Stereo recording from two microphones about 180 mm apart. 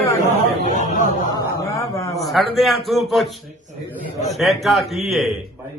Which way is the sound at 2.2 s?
Centre (ahead or behind).